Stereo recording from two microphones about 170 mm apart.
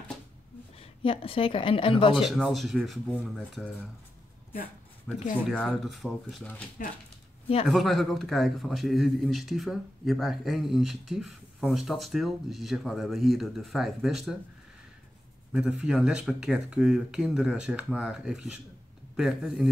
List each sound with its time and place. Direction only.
0.7 s a woman's voice: 35° left (ahead or behind)
2.1 s a man's voice: centre (ahead or behind)
5.1 s a man's voice: centre (ahead or behind)
6.8 s speech: 55° left (ahead or behind)
7.6 s a man's voice: centre (ahead or behind)
15.5 s a man's voice: 5° right (ahead or behind)